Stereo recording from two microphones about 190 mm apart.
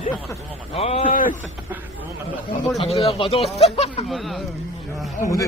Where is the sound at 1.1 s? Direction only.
45° left (ahead or behind).